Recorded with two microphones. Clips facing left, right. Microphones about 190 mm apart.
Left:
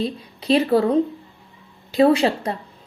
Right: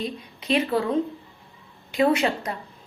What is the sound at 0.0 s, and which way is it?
A woman's voice, 35° left (ahead or behind).